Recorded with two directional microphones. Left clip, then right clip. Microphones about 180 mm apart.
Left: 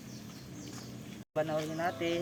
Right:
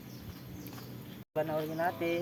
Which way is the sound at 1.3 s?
20° left (ahead or behind).